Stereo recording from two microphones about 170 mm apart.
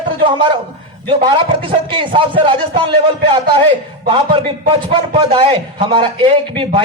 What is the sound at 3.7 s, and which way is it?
A man's voice, 30° right (ahead or behind).